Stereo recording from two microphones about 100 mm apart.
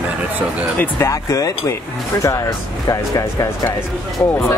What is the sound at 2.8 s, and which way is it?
Speech, 35° left (ahead or behind).